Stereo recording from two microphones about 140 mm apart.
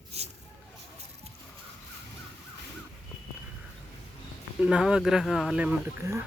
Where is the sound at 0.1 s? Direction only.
50° right (ahead or behind).